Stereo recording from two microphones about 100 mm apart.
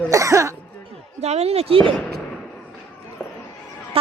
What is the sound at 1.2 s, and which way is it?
Speech, 90° right.